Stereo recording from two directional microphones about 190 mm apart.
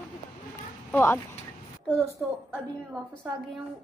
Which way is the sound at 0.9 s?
10° left (ahead or behind).